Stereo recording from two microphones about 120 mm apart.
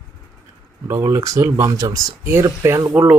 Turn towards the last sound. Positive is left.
turn(degrees=-15)  # may be behind; listen again after turning